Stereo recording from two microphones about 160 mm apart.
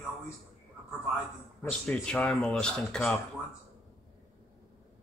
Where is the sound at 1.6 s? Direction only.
5° left (ahead or behind).